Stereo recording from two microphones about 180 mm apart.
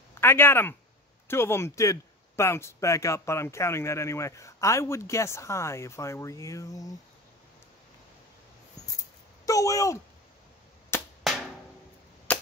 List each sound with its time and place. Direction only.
0.1 s speech: 15° left (ahead or behind)
9.5 s speech: 20° left (ahead or behind)
10.9 s a sound: 15° left (ahead or behind)
12.3 s cap gun: 10° left (ahead or behind)